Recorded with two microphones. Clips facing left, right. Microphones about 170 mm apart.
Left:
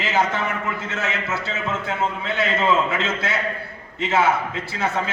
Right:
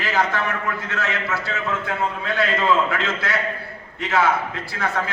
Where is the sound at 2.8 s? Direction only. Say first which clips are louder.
Even; 20° left (ahead or behind).